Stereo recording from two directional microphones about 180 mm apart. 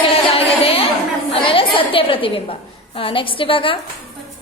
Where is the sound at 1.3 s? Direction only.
30° left (ahead or behind).